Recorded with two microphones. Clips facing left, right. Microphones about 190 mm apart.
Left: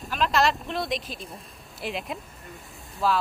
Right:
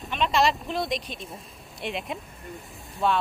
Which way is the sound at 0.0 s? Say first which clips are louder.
Even; centre (ahead or behind).